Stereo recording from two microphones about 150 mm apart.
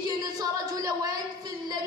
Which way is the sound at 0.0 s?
25° right (ahead or behind).